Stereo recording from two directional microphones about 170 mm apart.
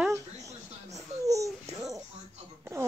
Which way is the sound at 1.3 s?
20° right (ahead or behind).